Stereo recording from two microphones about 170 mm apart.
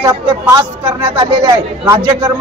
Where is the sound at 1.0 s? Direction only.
25° right (ahead or behind).